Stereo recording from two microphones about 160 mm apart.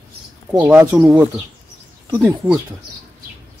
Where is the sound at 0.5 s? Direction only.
10° right (ahead or behind).